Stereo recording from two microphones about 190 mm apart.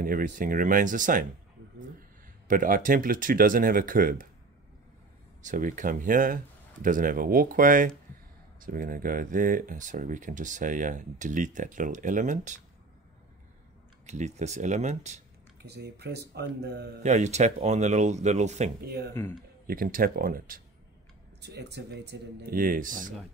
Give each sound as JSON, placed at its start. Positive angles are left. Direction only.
{"t": 0.0, "sound": "speech", "side_deg": -45}
{"t": 2.4, "sound": "speech", "side_deg": -45}
{"t": 5.4, "sound": "speech", "side_deg": -45}
{"t": 14.0, "sound": "speech", "side_deg": -35}
{"t": 15.6, "sound": "speech", "side_deg": -60}
{"t": 17.0, "sound": "speech", "side_deg": -35}
{"t": 19.6, "sound": "speech", "side_deg": -50}
{"t": 21.4, "sound": "speech", "side_deg": -65}